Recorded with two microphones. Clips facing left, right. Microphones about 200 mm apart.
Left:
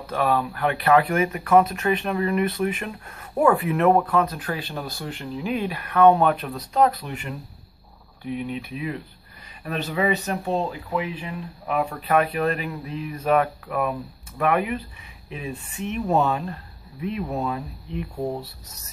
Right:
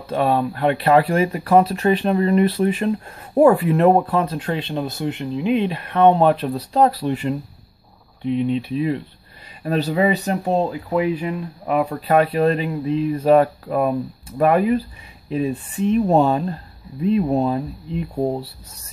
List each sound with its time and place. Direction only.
0.0 s speech: 25° right (ahead or behind)